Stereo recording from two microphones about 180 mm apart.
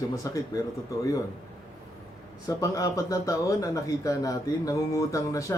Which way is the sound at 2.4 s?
20° left (ahead or behind).